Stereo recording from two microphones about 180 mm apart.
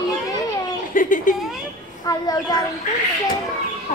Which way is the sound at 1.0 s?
45° left (ahead or behind).